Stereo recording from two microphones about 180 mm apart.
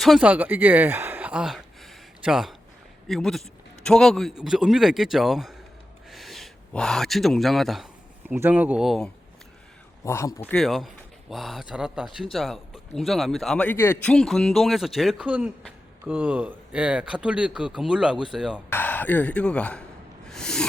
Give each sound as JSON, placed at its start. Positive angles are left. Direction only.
{"t": 0.0, "sound": "a man's voice", "side_deg": -5}
{"t": 10.0, "sound": "speech", "side_deg": 15}
{"t": 10.5, "sound": "a man's voice", "side_deg": 0}
{"t": 18.7, "sound": "speech", "side_deg": 10}
{"t": 20.2, "sound": "a sound", "side_deg": 5}